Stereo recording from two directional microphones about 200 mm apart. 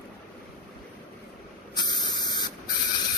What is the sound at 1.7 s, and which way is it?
Spray, 20° left (ahead or behind).